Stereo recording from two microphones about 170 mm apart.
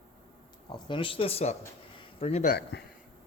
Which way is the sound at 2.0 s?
35° left (ahead or behind).